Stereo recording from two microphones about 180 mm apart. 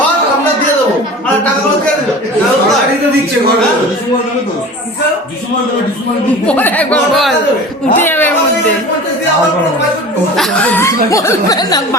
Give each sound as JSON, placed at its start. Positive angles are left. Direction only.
{"t": 6.5, "sound": "speech", "side_deg": 10}
{"t": 10.3, "sound": "speech", "side_deg": 5}